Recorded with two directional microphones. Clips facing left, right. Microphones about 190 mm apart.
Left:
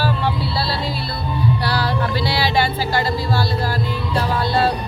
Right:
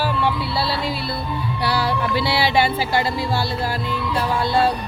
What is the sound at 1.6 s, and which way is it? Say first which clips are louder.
Speech: even; 20° right (ahead or behind).